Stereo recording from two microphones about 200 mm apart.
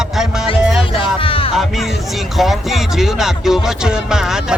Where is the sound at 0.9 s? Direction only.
25° left (ahead or behind).